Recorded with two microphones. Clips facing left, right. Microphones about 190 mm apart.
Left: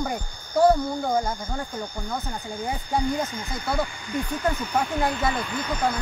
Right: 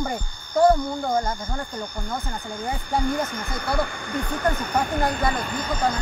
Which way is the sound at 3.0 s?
60° right (ahead or behind).